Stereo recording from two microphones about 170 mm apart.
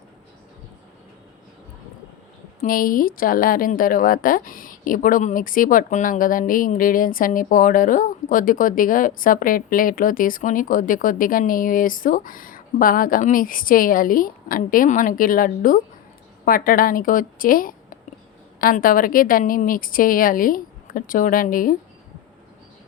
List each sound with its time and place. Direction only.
2.6 s a woman's voice: 55° left (ahead or behind)